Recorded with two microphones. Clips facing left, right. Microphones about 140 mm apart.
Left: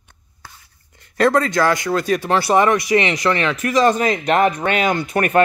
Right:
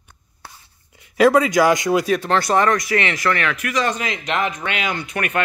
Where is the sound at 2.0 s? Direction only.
5° left (ahead or behind).